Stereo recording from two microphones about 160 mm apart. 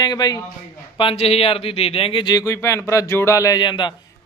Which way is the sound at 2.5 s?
15° left (ahead or behind).